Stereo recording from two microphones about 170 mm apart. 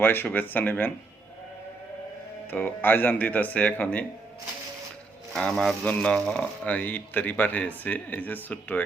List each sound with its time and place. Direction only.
0.0 s speech: 10° left (ahead or behind)
2.5 s speech: 10° left (ahead or behind)
5.3 s speech: centre (ahead or behind)